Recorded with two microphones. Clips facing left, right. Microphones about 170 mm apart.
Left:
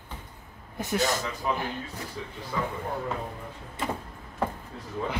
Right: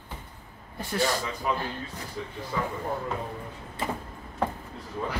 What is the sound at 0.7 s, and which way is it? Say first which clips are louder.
Speech: even; 15° left (ahead or behind).